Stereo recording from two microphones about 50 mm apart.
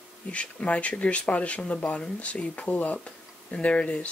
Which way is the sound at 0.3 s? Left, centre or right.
Left.